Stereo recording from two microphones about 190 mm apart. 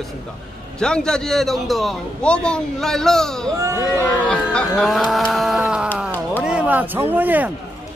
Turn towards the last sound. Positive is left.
turn(degrees=-10)  # may be behind; listen again after turning